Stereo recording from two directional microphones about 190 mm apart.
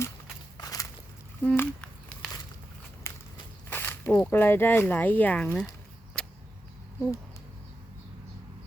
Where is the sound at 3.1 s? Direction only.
15° left (ahead or behind).